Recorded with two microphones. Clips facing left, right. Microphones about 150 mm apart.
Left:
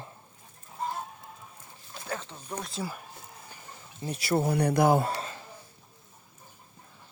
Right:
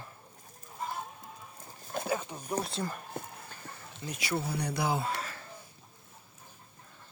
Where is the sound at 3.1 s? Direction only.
55° right (ahead or behind).